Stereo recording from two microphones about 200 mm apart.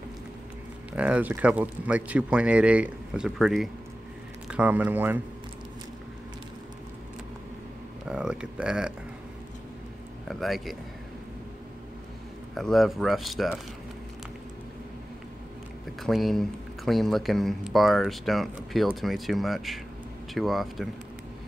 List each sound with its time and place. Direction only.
0.9 s speech: 5° right (ahead or behind)
8.0 s speech: 5° right (ahead or behind)
10.2 s speech: centre (ahead or behind)
12.5 s speech: centre (ahead or behind)
16.0 s speech: centre (ahead or behind)